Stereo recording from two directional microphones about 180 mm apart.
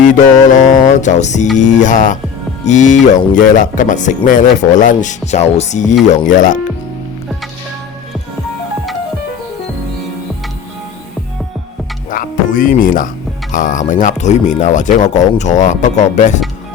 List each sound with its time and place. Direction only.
0.0 s speech: 45° left (ahead or behind)
12.1 s music: 50° left (ahead or behind)
13.5 s speech: 45° left (ahead or behind)